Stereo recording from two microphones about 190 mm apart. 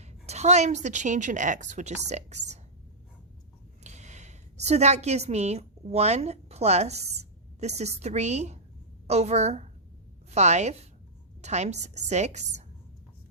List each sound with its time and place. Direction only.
0.0 s a woman's voice: 35° right (ahead or behind)
3.8 s a woman's voice: 35° right (ahead or behind)